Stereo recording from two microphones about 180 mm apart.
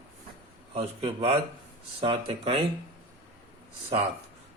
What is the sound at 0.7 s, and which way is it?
Speech, 35° right (ahead or behind).